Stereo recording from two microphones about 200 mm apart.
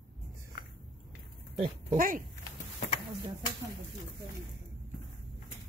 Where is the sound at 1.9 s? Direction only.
45° right (ahead or behind).